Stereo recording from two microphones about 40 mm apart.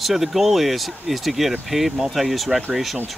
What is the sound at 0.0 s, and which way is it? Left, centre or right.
Speech, centre.